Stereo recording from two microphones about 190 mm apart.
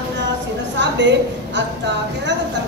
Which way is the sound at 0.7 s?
70° right (ahead or behind).